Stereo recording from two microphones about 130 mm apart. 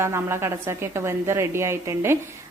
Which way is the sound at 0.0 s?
20° right (ahead or behind).